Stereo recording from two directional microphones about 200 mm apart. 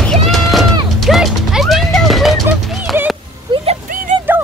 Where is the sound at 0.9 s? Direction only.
Centre (ahead or behind).